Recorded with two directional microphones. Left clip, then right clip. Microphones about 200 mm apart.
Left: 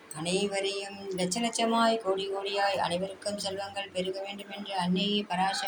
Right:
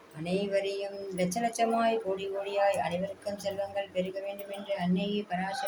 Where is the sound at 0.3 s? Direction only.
15° right (ahead or behind).